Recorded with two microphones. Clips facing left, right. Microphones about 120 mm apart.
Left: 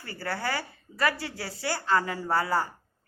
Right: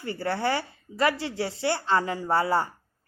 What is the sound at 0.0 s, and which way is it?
A woman's voice, 25° right (ahead or behind).